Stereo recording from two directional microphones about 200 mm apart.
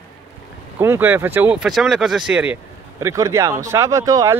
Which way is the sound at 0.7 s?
10° right (ahead or behind).